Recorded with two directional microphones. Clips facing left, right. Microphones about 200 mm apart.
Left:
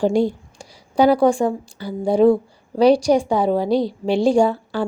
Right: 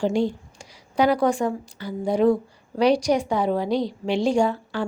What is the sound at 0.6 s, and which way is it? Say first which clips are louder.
A woman's voice: left 5 dB; 30° left (ahead or behind).